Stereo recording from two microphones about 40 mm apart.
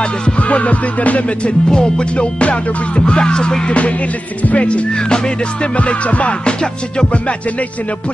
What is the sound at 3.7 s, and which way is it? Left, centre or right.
Music, left.